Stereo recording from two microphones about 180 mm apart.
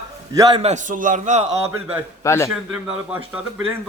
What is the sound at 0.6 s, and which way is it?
Speech, 40° right (ahead or behind).